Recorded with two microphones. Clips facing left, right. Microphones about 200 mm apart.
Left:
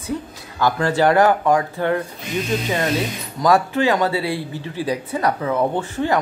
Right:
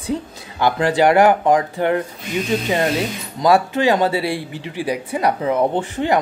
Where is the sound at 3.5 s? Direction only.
20° right (ahead or behind).